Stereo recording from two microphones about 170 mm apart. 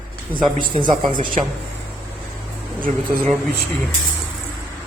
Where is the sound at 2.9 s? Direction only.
45° right (ahead or behind).